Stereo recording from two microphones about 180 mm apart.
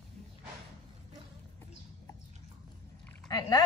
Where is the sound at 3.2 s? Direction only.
20° left (ahead or behind).